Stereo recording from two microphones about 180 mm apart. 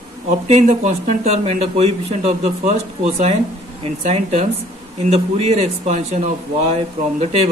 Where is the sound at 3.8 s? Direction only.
40° right (ahead or behind).